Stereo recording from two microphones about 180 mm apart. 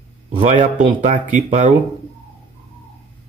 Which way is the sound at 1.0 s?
40° right (ahead or behind).